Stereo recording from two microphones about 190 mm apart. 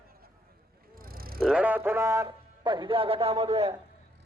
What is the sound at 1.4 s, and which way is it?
A man's voice, 5° right (ahead or behind).